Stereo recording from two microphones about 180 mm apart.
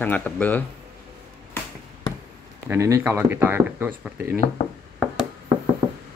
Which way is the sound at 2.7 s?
15° right (ahead or behind).